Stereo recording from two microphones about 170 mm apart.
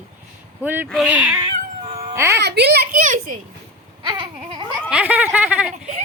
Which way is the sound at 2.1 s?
15° right (ahead or behind).